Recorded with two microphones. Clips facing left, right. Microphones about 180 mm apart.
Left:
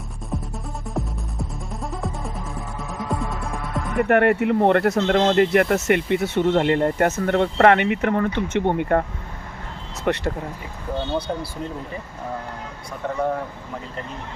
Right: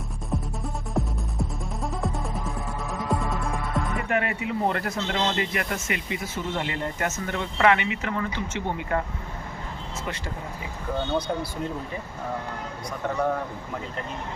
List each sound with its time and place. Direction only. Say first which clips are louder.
0.9 s music: right 1 dB; centre (ahead or behind)
3.9 s speech: left 14 dB; 60° left (ahead or behind)
10.0 s speech: left 12 dB; 65° left (ahead or behind)